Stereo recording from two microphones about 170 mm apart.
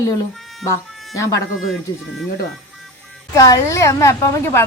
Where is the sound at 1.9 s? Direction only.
25° left (ahead or behind).